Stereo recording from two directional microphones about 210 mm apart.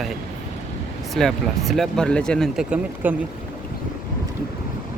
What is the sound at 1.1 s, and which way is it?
Speech, centre (ahead or behind).